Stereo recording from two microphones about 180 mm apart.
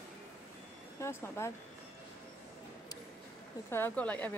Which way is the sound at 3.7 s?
10° left (ahead or behind).